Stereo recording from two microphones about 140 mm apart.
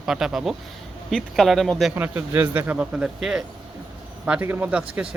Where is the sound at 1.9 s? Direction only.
15° right (ahead or behind).